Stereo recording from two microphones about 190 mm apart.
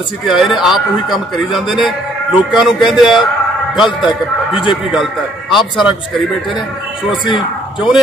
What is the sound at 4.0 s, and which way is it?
Speech, 25° left (ahead or behind).